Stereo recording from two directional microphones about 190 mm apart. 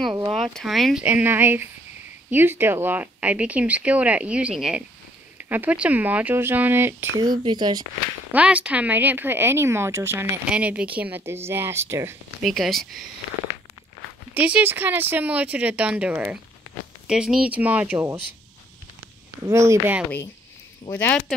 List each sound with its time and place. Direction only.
0.3 s speech: centre (ahead or behind); by 7.8 s 20° right (ahead or behind)
8.3 s speech: 5° right (ahead or behind)
12.4 s speech: centre (ahead or behind)
14.3 s speech: 5° right (ahead or behind)
19.4 s speech: 15° right (ahead or behind)
20.9 s speech: 10° left (ahead or behind)